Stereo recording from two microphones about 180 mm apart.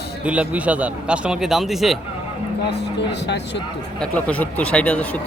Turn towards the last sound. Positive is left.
turn(degrees=5)  # may be behind; listen again after turning